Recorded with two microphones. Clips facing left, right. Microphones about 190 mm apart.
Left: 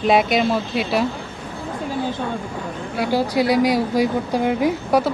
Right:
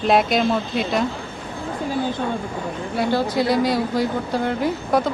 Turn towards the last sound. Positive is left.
turn(degrees=10)  # may be behind; listen again after turning